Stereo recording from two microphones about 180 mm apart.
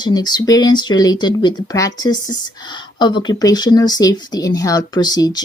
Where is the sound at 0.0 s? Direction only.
20° left (ahead or behind).